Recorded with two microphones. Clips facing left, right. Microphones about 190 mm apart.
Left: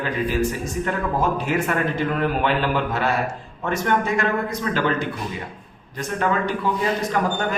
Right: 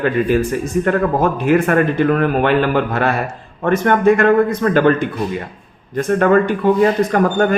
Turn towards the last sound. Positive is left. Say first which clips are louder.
# right 8 dB
turn(degrees=-55)  # may be behind; listen again after turning